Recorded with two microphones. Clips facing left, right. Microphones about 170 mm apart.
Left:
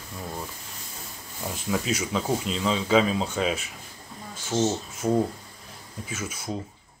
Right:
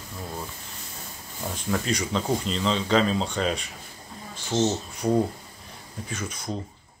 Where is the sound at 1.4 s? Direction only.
5° left (ahead or behind).